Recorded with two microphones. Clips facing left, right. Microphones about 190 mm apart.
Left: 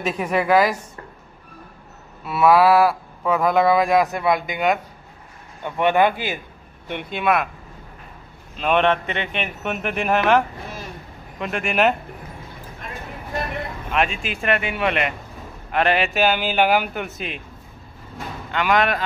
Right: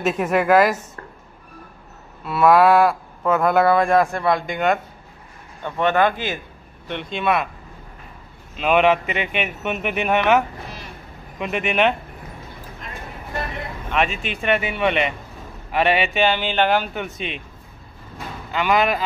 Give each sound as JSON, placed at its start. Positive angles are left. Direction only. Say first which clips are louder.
{"t": 0.0, "sound": "speech", "louder": "right 2 dB", "side_deg": -5}
{"t": 2.2, "sound": "a man's voice", "louder": "right 1 dB", "side_deg": 0}
{"t": 8.5, "sound": "speech", "louder": "right 2 dB", "side_deg": -5}
{"t": 13.9, "sound": "speech", "louder": "even", "side_deg": 0}
{"t": 18.5, "sound": "speech", "louder": "right 1 dB", "side_deg": -5}